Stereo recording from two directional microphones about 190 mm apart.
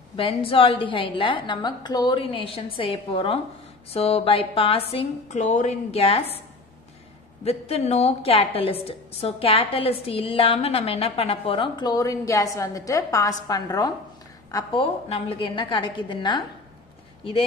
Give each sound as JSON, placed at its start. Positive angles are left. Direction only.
{"t": 0.1, "sound": "a woman's voice", "side_deg": 30}
{"t": 7.4, "sound": "a woman's voice", "side_deg": 35}